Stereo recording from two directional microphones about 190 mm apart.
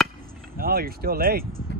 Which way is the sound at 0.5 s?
50° right (ahead or behind).